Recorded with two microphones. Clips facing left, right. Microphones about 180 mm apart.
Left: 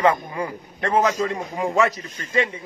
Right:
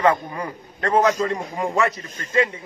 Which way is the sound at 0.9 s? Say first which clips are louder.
Right 2 dB; centre (ahead or behind).